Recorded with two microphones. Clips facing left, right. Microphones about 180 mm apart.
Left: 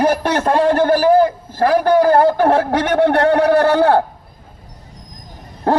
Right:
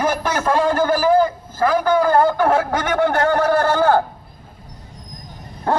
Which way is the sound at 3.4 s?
65° left (ahead or behind).